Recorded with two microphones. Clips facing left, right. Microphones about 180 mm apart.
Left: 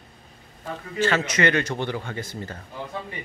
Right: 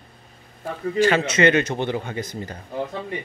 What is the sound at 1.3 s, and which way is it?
Speech, 20° right (ahead or behind).